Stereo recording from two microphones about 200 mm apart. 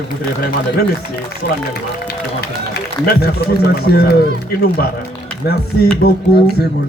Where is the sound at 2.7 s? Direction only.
50° left (ahead or behind).